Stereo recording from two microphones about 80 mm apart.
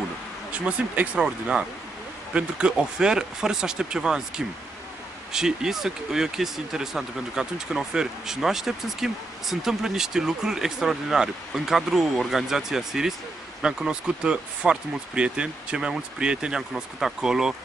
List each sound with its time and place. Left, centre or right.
0.5 s speech: centre